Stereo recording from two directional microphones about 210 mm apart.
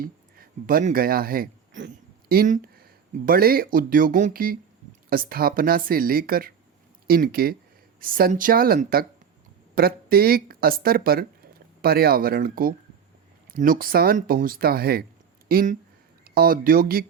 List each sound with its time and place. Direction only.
0.0 s speech: 45° right (ahead or behind)